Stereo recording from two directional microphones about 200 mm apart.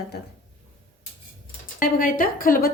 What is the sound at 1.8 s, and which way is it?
Speech, 45° left (ahead or behind).